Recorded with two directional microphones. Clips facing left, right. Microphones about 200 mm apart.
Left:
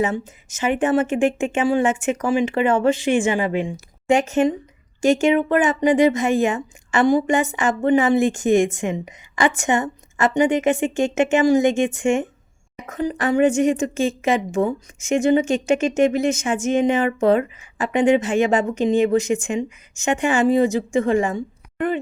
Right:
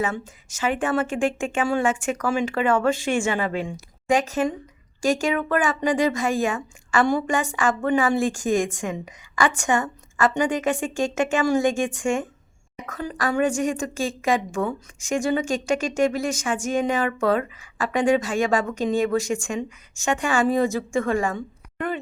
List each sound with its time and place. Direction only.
0.0 s speech: 20° left (ahead or behind)